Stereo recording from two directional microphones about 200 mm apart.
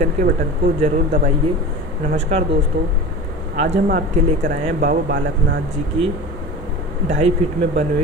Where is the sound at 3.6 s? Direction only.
60° right (ahead or behind).